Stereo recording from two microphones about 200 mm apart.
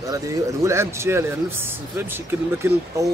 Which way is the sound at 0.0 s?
15° right (ahead or behind).